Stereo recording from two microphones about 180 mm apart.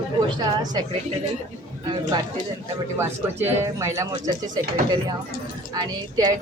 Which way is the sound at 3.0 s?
15° right (ahead or behind).